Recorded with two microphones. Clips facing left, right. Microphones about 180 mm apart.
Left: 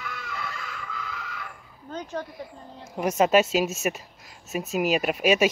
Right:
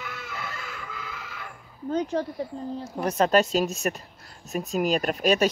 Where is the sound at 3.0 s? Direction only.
10° left (ahead or behind).